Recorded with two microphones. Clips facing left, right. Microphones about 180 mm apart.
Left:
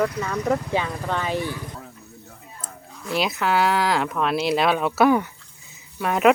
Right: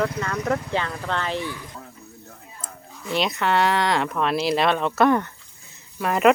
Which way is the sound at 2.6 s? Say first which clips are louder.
Even; centre (ahead or behind).